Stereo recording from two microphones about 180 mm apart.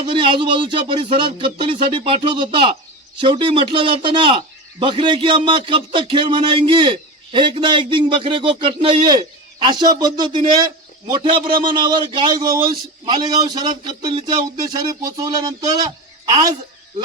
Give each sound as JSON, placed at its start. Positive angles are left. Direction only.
{"t": 0.0, "sound": "a man's voice", "side_deg": -30}